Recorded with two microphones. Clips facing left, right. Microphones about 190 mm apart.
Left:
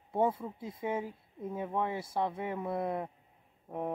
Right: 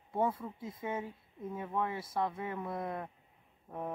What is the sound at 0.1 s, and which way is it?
Speech, 25° left (ahead or behind).